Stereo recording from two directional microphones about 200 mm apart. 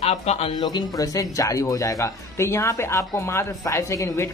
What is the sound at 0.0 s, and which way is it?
A man's voice, 35° left (ahead or behind).